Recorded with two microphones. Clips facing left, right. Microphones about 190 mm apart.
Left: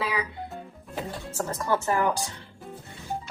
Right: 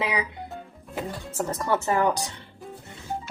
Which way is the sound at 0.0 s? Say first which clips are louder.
Right 2 dB; 20° right (ahead or behind).